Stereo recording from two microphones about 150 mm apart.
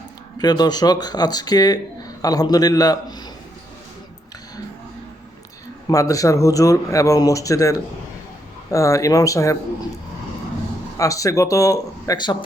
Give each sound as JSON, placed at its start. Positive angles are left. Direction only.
{"t": 0.3, "sound": "speech", "side_deg": 25}
{"t": 5.9, "sound": "speech", "side_deg": 20}
{"t": 10.9, "sound": "speech", "side_deg": 20}